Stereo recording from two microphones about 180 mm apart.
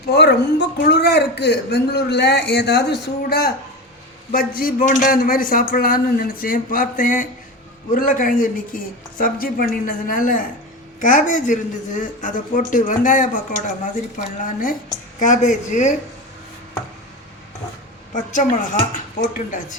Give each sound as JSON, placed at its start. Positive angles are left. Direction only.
{"t": 0.1, "sound": "a man's voice", "side_deg": 65}
{"t": 18.1, "sound": "a man's voice", "side_deg": 45}